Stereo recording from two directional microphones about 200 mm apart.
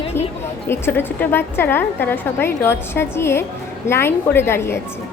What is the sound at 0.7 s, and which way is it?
A woman's voice, 10° left (ahead or behind).